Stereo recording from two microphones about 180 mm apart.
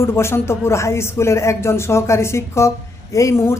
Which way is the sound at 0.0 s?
15° left (ahead or behind).